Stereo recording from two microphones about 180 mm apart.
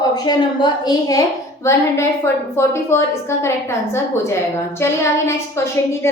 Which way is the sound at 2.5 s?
15° left (ahead or behind).